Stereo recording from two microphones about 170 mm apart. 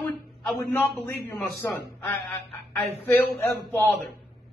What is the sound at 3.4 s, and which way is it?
Speech, 15° left (ahead or behind).